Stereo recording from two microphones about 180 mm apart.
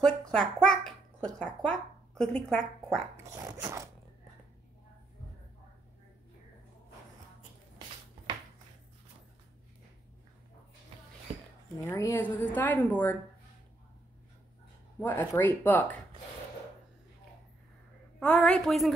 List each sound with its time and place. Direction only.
0.3 s babbling: 5° left (ahead or behind)
3.3 s a sound: 15° right (ahead or behind)
11.3 s a sound: 35° right (ahead or behind)
11.8 s a woman's voice: 15° left (ahead or behind)
15.0 s a woman's voice: 10° left (ahead or behind)
18.2 s a woman's voice: 5° left (ahead or behind)